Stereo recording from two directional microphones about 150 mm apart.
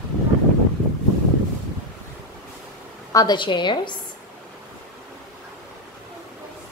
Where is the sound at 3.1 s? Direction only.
25° left (ahead or behind).